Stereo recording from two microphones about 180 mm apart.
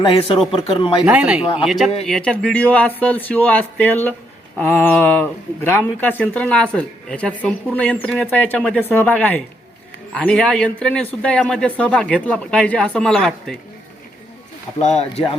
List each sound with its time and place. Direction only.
0.0 s speech: 30° left (ahead or behind)
1.0 s speech: 10° right (ahead or behind)
14.8 s speech: 40° left (ahead or behind)